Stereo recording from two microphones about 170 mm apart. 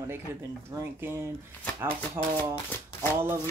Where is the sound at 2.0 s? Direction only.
10° left (ahead or behind).